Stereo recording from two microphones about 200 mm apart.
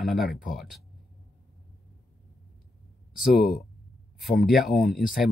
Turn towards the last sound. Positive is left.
turn(degrees=0)  # may be behind; listen again after turning